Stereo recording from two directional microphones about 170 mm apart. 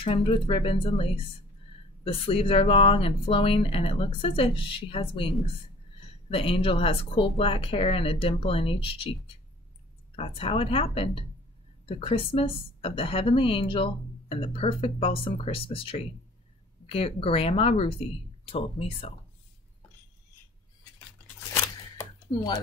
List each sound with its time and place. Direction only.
0.0 s a woman's voice: 30° left (ahead or behind)
6.3 s a woman's voice: 35° left (ahead or behind)
21.9 s a sound: 25° left (ahead or behind)